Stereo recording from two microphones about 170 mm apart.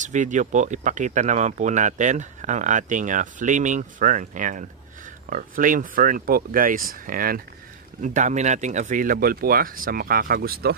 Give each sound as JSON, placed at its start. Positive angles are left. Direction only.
{"t": 0.0, "sound": "speech", "side_deg": -45}
{"t": 8.0, "sound": "speech", "side_deg": -45}